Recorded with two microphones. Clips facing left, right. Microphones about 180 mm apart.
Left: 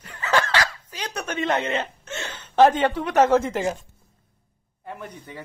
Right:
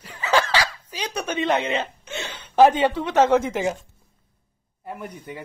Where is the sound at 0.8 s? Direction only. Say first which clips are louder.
Right 2 dB; 15° right (ahead or behind).